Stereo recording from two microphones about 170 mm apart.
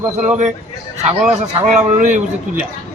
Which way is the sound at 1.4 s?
45° right (ahead or behind).